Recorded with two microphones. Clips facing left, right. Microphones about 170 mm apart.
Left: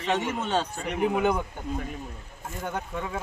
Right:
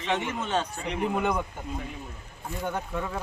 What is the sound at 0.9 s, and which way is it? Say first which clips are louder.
Speech: left 4 dB; 5° left (ahead or behind).